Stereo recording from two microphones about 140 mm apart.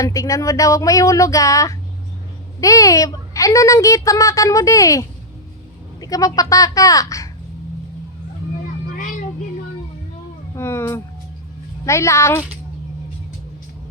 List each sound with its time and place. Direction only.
0.0 s a child's voice: 20° left (ahead or behind)
10.5 s a sound: 20° left (ahead or behind)
11.9 s a child's voice: 20° left (ahead or behind)